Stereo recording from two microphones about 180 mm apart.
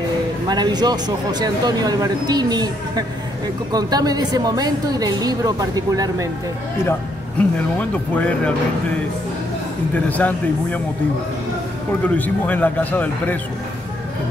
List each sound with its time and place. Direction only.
0.5 s speech: 25° right (ahead or behind)
6.8 s a man's voice: 15° left (ahead or behind)
9.9 s speech: 10° left (ahead or behind)
12.2 s speech: 10° left (ahead or behind)